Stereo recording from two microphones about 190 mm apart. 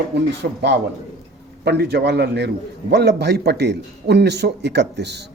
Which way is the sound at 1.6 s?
60° right (ahead or behind).